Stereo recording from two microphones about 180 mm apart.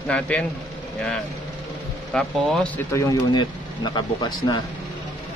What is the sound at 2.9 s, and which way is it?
Speech, 20° left (ahead or behind).